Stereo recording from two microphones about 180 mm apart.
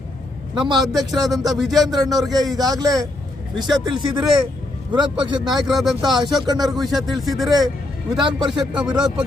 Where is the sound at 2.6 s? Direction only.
20° right (ahead or behind).